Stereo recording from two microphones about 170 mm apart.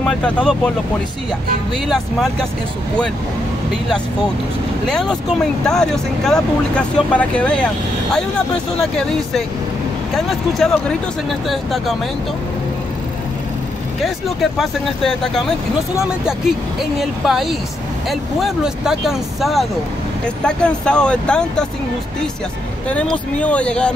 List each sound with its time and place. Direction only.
0.0 s speech: 5° left (ahead or behind)
4.8 s speech: 5° left (ahead or behind)
14.0 s speech: centre (ahead or behind)
17.0 s speech: centre (ahead or behind)
22.8 s speech: 5° left (ahead or behind)